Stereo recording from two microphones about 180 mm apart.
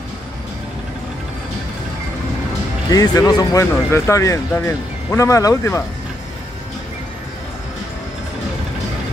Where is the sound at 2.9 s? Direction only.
20° left (ahead or behind).